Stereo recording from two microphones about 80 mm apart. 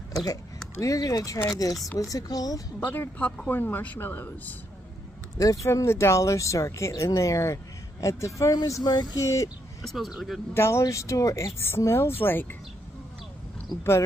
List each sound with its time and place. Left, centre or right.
0.1 s a sound: left
0.7 s speech: left
2.9 s speech: left
5.4 s speech: left
8.8 s speech: left
9.2 s speech: left
9.8 s speech: centre
10.5 s speech: left
13.7 s speech: left